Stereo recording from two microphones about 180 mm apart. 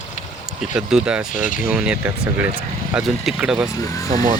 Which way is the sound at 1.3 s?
45° left (ahead or behind).